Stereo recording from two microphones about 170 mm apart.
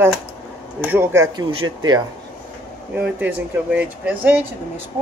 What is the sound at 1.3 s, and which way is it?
Speech, 25° right (ahead or behind).